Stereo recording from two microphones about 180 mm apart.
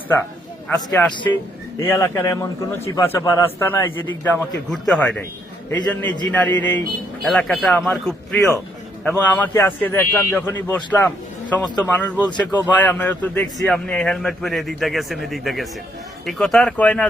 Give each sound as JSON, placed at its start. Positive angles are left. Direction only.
{"t": 0.7, "sound": "a man's voice", "side_deg": 10}